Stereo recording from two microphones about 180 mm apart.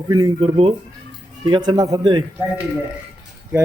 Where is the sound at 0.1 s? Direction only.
20° right (ahead or behind).